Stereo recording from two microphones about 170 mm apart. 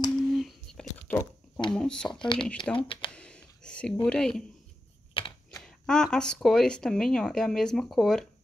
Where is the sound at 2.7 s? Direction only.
30° left (ahead or behind).